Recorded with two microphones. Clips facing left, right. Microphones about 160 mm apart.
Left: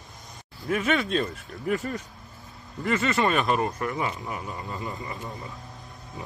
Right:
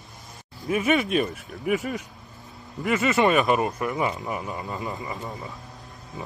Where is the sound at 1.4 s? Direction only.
Centre (ahead or behind).